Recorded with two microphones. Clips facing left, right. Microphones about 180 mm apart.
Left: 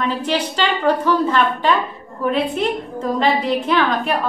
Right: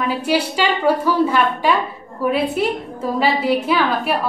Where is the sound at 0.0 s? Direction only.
10° right (ahead or behind).